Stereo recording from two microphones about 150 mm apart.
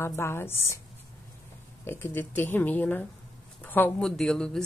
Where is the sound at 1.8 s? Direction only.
15° left (ahead or behind).